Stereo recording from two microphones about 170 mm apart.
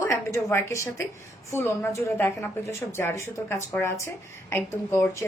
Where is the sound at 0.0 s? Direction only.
15° left (ahead or behind).